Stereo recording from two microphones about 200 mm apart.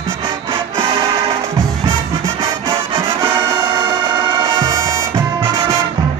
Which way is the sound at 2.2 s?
15° right (ahead or behind).